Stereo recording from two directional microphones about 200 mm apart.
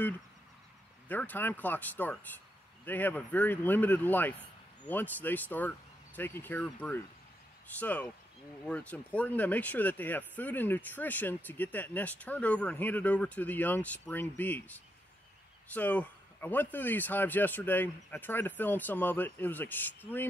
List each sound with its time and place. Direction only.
1.0 s speech: 10° left (ahead or behind)